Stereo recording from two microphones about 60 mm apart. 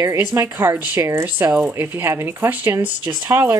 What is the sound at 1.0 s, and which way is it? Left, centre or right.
A woman's voice, right.